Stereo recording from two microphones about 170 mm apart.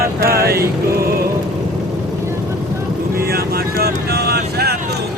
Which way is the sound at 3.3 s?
65° right (ahead or behind).